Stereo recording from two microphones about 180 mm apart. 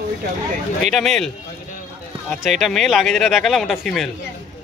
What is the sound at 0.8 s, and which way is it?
Speech, centre (ahead or behind).